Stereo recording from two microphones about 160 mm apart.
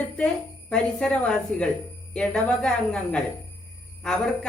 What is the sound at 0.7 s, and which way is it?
A woman's voice, 5° left (ahead or behind).